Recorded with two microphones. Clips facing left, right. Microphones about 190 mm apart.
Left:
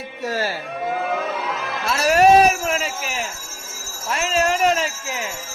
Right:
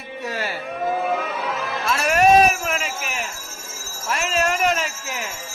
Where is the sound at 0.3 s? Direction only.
40° left (ahead or behind).